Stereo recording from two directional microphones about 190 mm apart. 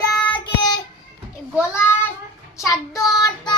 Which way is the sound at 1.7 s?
15° left (ahead or behind).